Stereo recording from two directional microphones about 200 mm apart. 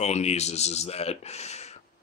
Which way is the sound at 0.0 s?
35° left (ahead or behind).